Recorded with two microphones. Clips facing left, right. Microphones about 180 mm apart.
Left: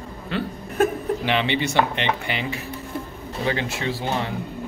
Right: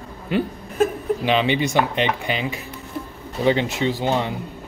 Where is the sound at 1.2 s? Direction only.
15° right (ahead or behind).